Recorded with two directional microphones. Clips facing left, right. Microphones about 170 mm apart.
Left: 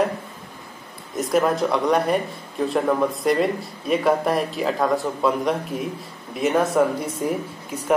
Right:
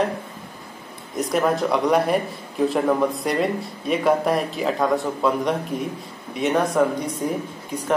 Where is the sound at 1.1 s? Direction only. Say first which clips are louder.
Left 1 dB; centre (ahead or behind).